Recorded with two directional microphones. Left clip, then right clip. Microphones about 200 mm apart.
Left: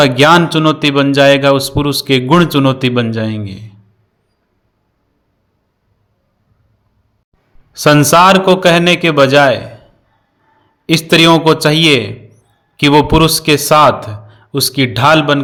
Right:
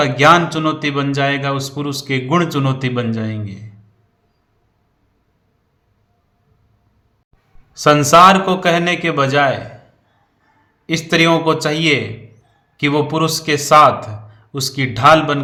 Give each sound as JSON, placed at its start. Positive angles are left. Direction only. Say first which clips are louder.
{"t": 0.0, "sound": "a man's voice", "louder": "left 3 dB", "side_deg": 40}
{"t": 7.7, "sound": "a man's voice", "louder": "left 2 dB", "side_deg": 35}
{"t": 10.8, "sound": "a man's voice", "louder": "left 6 dB", "side_deg": 35}